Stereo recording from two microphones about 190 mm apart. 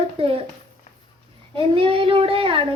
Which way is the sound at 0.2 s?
30° right (ahead or behind).